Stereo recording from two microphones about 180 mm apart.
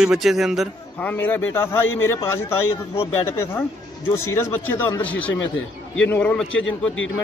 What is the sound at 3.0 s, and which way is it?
A man's voice, 15° left (ahead or behind).